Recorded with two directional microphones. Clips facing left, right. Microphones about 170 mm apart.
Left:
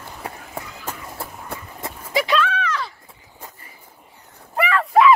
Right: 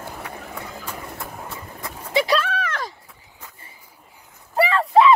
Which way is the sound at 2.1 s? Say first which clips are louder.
Even; 35° right (ahead or behind).